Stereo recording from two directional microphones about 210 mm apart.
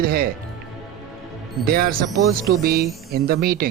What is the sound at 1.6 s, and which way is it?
Speech, 45° right (ahead or behind).